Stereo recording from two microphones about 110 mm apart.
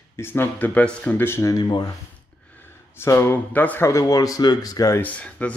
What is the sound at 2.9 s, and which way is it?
Speech, 25° left (ahead or behind).